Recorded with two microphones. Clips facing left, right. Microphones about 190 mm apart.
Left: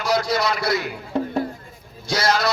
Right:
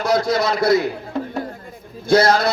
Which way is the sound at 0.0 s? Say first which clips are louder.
Right 3 dB; 50° right (ahead or behind).